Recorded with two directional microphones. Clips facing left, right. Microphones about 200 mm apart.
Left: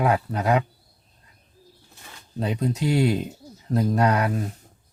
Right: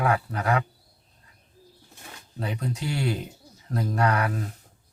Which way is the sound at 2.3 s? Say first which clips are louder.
Left 6 dB; 20° left (ahead or behind).